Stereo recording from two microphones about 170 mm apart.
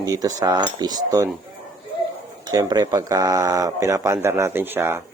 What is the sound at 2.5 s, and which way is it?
Speech, 25° right (ahead or behind).